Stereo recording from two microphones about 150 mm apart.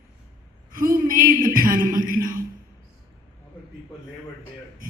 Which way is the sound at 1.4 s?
65° right (ahead or behind).